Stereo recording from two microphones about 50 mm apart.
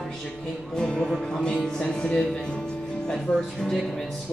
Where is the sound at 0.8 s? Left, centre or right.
Centre.